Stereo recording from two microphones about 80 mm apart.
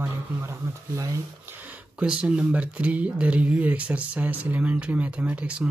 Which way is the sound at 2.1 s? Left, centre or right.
Centre.